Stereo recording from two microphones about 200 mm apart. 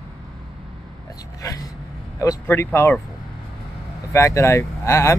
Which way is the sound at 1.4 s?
15° left (ahead or behind).